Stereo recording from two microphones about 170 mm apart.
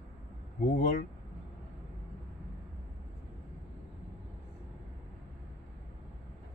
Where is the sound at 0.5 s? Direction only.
50° left (ahead or behind).